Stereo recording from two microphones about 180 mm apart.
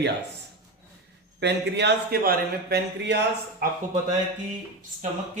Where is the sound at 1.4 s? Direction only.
70° right (ahead or behind).